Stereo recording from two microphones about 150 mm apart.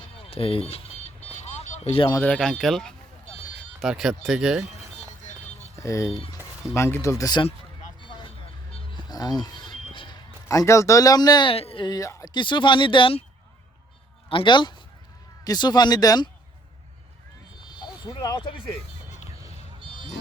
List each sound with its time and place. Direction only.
0.0 s vehicle: 40° left (ahead or behind)
2.2 s speech: 5° left (ahead or behind)
5.2 s music: 55° left (ahead or behind)
5.7 s speech: 20° left (ahead or behind)
8.0 s vehicle: 30° left (ahead or behind)
9.0 s speech: 25° left (ahead or behind)
14.3 s speech: 35° left (ahead or behind)
18.1 s speech: 25° left (ahead or behind)
19.8 s a sound: 35° right (ahead or behind)